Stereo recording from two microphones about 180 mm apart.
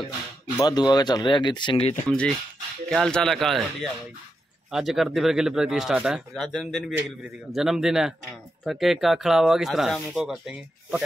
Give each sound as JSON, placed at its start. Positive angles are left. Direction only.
{"t": 0.6, "sound": "speech", "side_deg": 25}
{"t": 2.0, "sound": "speech", "side_deg": 5}